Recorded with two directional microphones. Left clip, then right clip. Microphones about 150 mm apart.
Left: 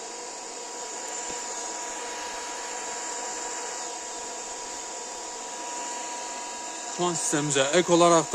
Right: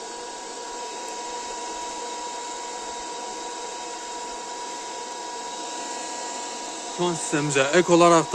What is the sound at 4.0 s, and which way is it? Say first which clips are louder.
Hair dryer: right 3 dB; 35° left (ahead or behind).